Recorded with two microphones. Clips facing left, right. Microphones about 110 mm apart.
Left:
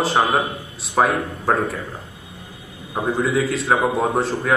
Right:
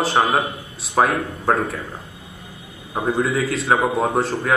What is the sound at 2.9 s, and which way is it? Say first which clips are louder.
Speech: even; centre (ahead or behind).